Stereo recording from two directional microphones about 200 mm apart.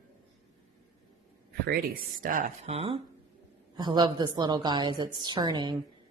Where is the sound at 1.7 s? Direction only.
45° right (ahead or behind); by 5.8 s 20° right (ahead or behind).